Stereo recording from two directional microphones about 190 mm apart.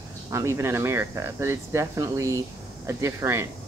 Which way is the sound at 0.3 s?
15° right (ahead or behind).